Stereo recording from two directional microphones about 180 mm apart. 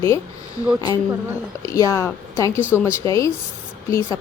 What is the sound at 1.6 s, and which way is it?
Speech, 15° left (ahead or behind).